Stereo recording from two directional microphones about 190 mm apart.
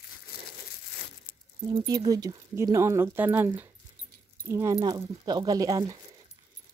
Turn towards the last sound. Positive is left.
turn(degrees=-20)  # may be behind; listen again after turning